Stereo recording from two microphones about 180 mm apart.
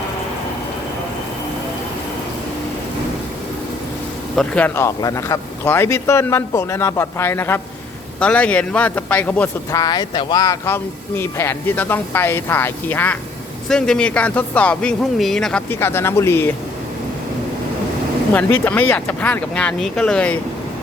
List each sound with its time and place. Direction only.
4.4 s speech: 10° left (ahead or behind)
9.8 s speech: 25° left (ahead or behind)
18.3 s speech: 10° left (ahead or behind)